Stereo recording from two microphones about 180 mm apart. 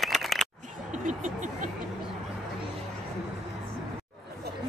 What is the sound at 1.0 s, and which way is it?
Vehicle, 45° right (ahead or behind).